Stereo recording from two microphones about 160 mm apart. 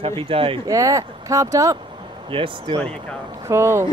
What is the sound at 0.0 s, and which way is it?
Speech, 35° right (ahead or behind).